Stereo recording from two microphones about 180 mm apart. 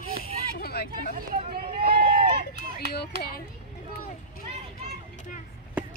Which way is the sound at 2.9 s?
60° left (ahead or behind).